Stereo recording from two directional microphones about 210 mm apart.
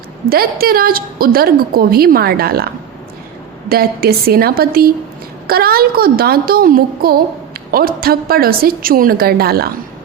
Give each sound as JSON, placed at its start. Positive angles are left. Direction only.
{"t": 0.3, "sound": "a woman's voice", "side_deg": -45}